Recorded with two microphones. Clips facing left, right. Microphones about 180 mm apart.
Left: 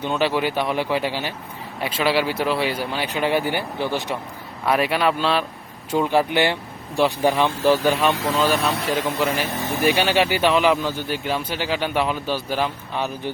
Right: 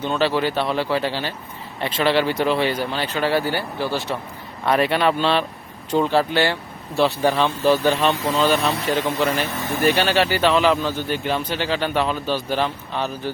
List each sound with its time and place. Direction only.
0.0 s speech: 15° left (ahead or behind)
4.6 s speech: 5° left (ahead or behind)